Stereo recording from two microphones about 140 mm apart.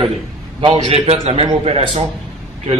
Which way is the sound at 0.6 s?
40° right (ahead or behind).